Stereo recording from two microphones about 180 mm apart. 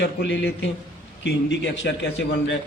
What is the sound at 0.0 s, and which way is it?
A man's voice, 70° left (ahead or behind).